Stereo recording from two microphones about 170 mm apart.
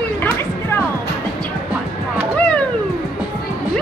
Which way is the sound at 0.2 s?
10° left (ahead or behind).